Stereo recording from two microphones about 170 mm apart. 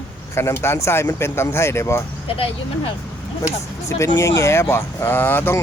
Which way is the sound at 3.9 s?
20° left (ahead or behind).